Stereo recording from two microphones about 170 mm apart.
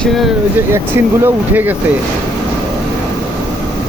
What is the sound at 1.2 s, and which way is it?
Speech, 10° right (ahead or behind).